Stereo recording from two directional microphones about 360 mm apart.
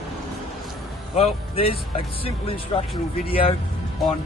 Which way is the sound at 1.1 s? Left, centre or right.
Centre.